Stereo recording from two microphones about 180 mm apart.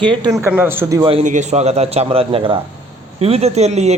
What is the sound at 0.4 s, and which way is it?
Speech, 10° right (ahead or behind).